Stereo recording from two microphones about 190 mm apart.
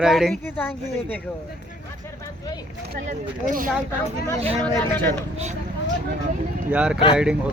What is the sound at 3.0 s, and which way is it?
Speech, 45° right (ahead or behind).